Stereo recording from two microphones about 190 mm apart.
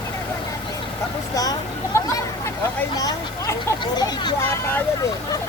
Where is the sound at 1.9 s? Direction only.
15° left (ahead or behind).